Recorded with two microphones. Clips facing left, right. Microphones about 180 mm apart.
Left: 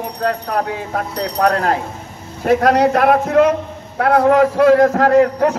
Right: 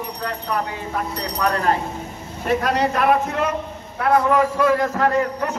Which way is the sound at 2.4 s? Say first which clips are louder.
Left 7 dB; 85° left.